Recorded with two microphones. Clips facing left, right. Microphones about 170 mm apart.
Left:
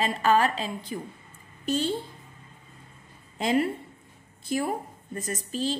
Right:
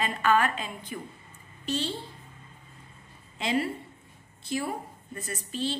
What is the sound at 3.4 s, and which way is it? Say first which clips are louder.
Speech: left 4 dB; 45° left (ahead or behind).